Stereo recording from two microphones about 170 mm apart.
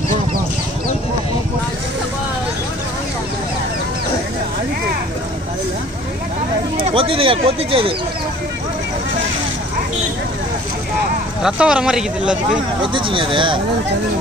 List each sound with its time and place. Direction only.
6.8 s speech: 30° right (ahead or behind)
11.4 s speech: 5° right (ahead or behind)
12.8 s speech: 30° right (ahead or behind)